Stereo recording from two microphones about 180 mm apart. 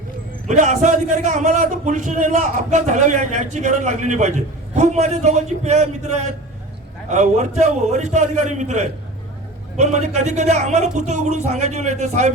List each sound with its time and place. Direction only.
0.4 s a man's voice: 40° right (ahead or behind)